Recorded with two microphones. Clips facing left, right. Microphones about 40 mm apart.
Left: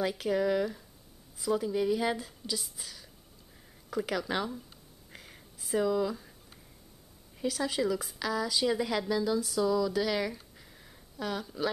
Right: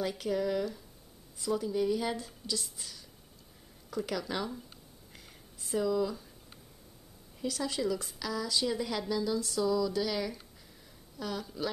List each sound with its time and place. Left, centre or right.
0.0 s a woman's voice: centre
5.1 s a sound: left
5.8 s speech: left
7.4 s a woman's voice: centre